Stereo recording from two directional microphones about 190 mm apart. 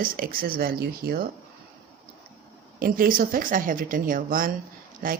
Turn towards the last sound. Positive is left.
turn(degrees=-45)  # may be behind; listen again after turning